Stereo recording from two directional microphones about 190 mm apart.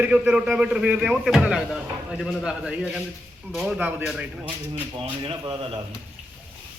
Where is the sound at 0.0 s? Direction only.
5° right (ahead or behind).